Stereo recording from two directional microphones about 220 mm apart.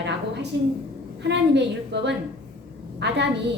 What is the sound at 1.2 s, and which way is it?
Speech, 50° right (ahead or behind).